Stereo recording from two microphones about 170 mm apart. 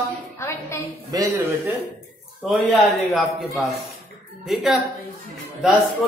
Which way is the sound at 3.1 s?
Centre (ahead or behind).